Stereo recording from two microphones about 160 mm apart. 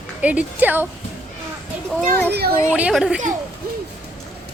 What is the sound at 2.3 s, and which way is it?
Speech, 80° right.